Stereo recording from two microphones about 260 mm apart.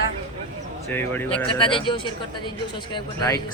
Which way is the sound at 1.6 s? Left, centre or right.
Centre.